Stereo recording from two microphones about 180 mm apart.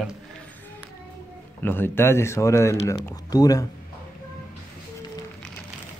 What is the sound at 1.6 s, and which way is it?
Speech, 10° left (ahead or behind).